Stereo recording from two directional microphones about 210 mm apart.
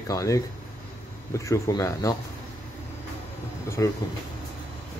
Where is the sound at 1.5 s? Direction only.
15° left (ahead or behind).